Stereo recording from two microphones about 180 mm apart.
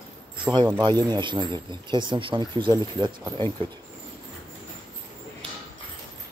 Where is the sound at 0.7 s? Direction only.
25° right (ahead or behind).